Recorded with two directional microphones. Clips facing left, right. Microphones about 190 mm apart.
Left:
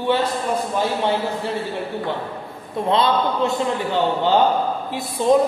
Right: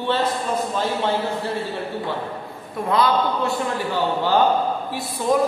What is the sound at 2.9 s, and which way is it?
A man's voice, 25° left (ahead or behind).